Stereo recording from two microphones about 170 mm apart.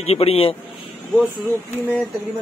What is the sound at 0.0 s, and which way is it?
Speech, 35° left (ahead or behind).